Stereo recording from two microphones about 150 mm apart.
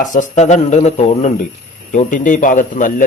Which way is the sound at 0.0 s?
55° left (ahead or behind).